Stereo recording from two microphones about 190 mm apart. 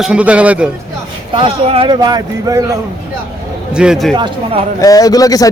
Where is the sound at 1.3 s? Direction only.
30° right (ahead or behind).